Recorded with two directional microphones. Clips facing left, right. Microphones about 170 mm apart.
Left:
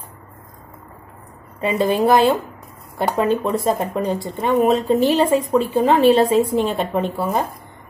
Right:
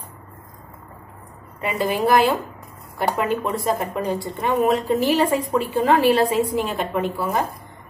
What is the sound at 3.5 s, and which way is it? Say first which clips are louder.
A woman's voice: left 3 dB; 25° left (ahead or behind).